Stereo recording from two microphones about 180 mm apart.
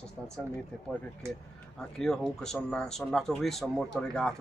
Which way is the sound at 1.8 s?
5° left (ahead or behind).